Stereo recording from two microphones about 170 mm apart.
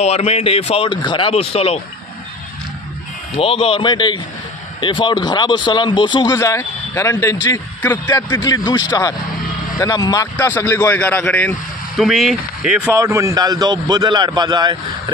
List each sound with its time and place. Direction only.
0.0 s speech: 40° left (ahead or behind)
3.3 s a man's voice: 35° left (ahead or behind)
10.3 s a man's voice: 10° left (ahead or behind)
12.0 s speech: centre (ahead or behind)
12.9 s a man's voice: 20° right (ahead or behind)